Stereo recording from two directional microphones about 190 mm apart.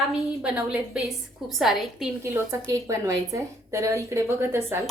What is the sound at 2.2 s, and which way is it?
A woman's voice, 15° right (ahead or behind).